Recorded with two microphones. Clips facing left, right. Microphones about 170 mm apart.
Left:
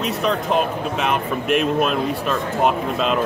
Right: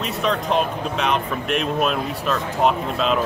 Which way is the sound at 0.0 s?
Centre (ahead or behind).